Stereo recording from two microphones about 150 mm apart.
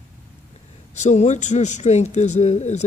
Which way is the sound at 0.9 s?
50° left (ahead or behind).